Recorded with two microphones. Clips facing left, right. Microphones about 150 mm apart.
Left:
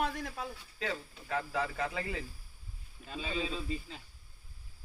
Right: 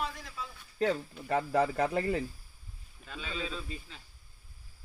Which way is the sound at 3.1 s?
30° left (ahead or behind).